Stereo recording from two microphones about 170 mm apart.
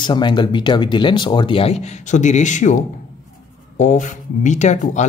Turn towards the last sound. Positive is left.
turn(degrees=45)  # may be behind; listen again after turning